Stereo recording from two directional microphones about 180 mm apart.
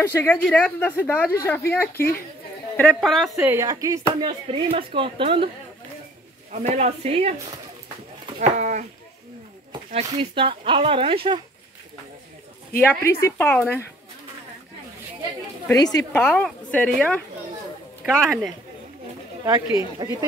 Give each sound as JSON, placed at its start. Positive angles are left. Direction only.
{"t": 0.1, "sound": "a woman's voice", "side_deg": 10}
{"t": 3.3, "sound": "speech", "side_deg": -15}
{"t": 4.5, "sound": "speech", "side_deg": -30}
{"t": 6.5, "sound": "speech", "side_deg": -40}
{"t": 8.4, "sound": "speech", "side_deg": -45}
{"t": 10.1, "sound": "speech", "side_deg": -30}
{"t": 12.7, "sound": "a woman's voice", "side_deg": 15}
{"t": 15.7, "sound": "a woman's voice", "side_deg": 20}
{"t": 16.1, "sound": "a woman's voice", "side_deg": 10}
{"t": 19.4, "sound": "speech", "side_deg": -15}